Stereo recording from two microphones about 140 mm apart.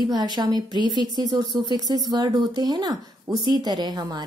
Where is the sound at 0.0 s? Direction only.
30° right (ahead or behind).